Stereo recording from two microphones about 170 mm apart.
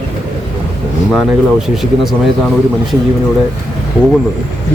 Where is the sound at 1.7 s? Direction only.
Centre (ahead or behind).